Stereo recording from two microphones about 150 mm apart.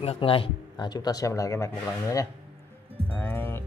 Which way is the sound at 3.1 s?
15° left (ahead or behind).